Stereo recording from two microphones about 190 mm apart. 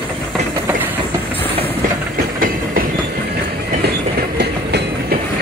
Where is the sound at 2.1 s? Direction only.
50° right (ahead or behind).